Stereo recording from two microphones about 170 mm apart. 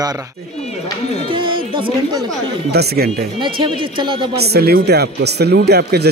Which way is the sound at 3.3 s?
30° right (ahead or behind).